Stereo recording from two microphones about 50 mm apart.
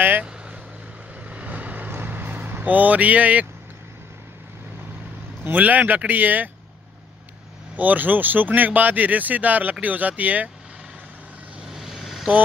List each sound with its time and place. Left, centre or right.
1.3 s vehicle: right
2.6 s speech: right
5.4 s speech: right
7.7 s speech: right
11.7 s vehicle: centre